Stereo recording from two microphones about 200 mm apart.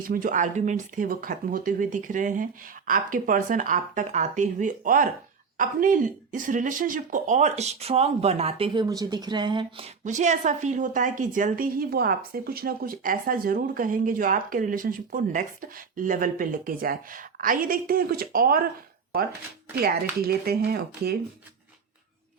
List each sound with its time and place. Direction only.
0.0 s speech: 45° right (ahead or behind); by 9.8 s 25° right (ahead or behind)
10.0 s a woman's voice: 35° right (ahead or behind)
19.7 s a woman's voice: 50° right (ahead or behind)